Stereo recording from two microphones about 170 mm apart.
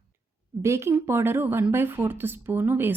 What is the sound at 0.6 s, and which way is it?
A woman's voice, 15° right (ahead or behind).